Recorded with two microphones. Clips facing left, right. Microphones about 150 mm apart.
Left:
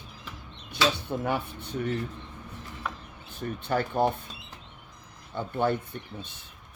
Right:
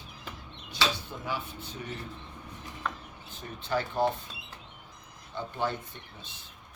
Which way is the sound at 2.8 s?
10° left (ahead or behind).